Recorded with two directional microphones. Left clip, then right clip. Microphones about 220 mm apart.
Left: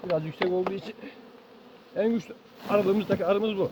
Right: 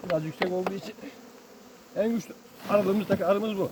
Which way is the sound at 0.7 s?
15° left (ahead or behind).